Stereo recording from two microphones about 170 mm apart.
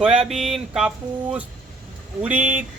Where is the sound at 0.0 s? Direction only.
5° right (ahead or behind).